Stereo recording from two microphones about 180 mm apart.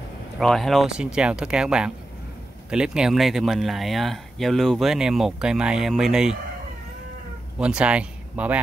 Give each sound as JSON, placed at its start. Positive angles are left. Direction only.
{"t": 0.4, "sound": "speech", "side_deg": 0}
{"t": 7.5, "sound": "speech", "side_deg": -5}